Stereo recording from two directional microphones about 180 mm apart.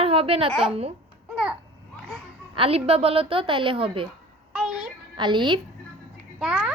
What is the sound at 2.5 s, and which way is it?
A woman's voice, 30° right (ahead or behind).